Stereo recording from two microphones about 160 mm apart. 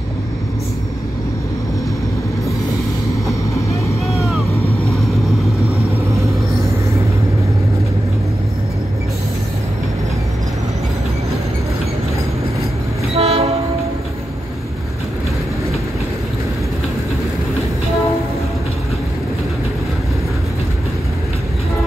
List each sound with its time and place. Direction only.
13.1 s train: 40° right (ahead or behind)